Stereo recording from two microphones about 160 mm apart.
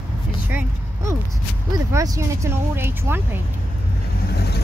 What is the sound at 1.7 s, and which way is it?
Speech, 20° right (ahead or behind).